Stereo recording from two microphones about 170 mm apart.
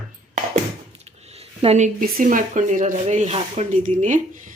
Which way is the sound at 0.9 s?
40° right (ahead or behind).